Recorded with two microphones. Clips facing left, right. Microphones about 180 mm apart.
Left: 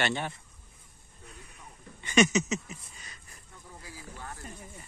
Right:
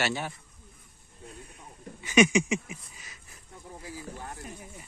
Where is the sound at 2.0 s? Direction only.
10° right (ahead or behind).